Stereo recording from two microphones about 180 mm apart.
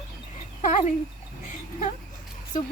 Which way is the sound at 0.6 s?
45° left (ahead or behind).